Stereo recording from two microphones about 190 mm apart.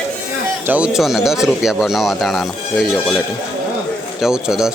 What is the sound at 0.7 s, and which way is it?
Speech, 5° right (ahead or behind).